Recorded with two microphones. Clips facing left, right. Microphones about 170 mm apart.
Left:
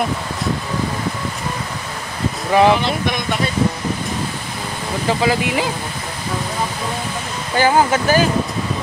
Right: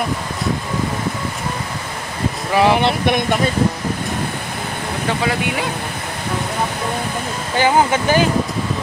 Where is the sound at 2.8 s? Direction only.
55° right (ahead or behind).